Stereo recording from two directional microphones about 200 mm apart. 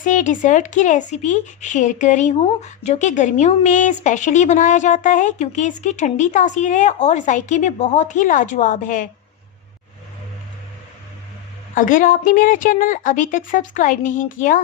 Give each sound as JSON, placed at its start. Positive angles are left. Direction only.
{"t": 0.0, "sound": "speech", "side_deg": 40}
{"t": 11.7, "sound": "speech", "side_deg": 40}